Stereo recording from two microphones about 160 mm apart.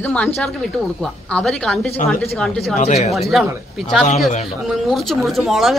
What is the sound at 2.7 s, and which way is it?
Speech, 45° left (ahead or behind).